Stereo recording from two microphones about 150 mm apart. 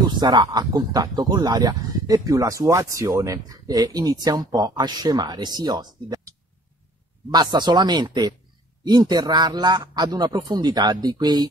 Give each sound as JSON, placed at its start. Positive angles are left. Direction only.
{"t": 0.2, "sound": "speech", "side_deg": -30}